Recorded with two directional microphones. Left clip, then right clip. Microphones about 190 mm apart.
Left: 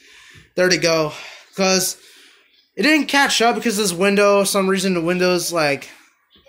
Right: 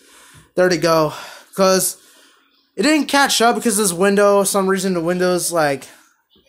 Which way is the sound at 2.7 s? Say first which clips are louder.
Even; 10° right (ahead or behind).